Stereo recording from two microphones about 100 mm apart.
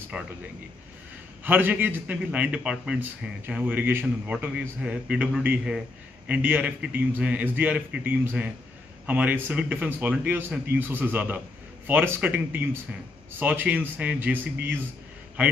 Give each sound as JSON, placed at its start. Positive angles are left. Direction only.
{"t": 0.1, "sound": "a man's voice", "side_deg": -10}
{"t": 1.4, "sound": "a man's voice", "side_deg": -15}